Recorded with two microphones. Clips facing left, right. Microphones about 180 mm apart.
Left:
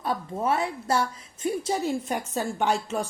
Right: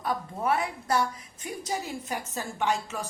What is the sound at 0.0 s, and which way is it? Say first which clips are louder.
A woman's voice: left 2 dB; 25° left (ahead or behind).